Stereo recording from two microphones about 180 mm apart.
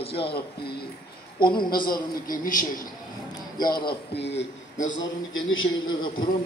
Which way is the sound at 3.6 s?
25° left (ahead or behind).